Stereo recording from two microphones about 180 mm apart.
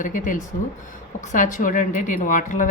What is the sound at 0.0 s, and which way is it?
A woman's voice, 45° left (ahead or behind).